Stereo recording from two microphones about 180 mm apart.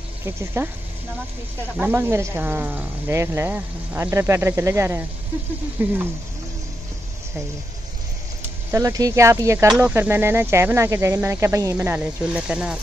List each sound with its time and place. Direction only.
0.2 s speech: 15° right (ahead or behind)
1.8 s speech: 10° right (ahead or behind)
8.7 s speech: 20° right (ahead or behind)